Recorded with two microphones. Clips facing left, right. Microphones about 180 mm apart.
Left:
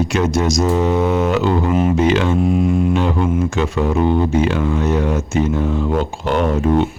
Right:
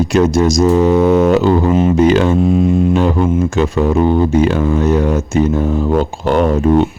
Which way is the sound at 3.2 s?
20° right (ahead or behind).